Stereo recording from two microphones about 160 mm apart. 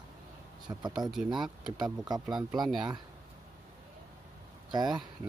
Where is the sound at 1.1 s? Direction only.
5° right (ahead or behind).